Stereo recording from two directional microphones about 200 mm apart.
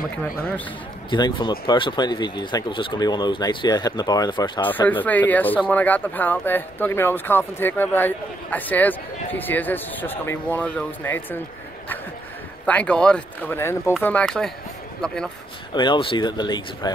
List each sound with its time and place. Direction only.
1.1 s speech: 25° left (ahead or behind)
4.6 s speech: 10° left (ahead or behind)
12.6 s speech: 5° left (ahead or behind)
15.7 s speech: 25° left (ahead or behind)